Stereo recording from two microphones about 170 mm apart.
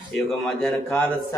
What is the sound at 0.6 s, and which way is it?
Speech, 10° left (ahead or behind).